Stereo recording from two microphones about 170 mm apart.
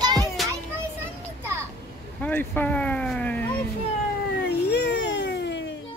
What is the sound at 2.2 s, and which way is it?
Speech, 10° left (ahead or behind).